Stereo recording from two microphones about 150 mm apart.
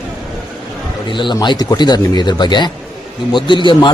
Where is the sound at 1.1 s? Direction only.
30° left (ahead or behind).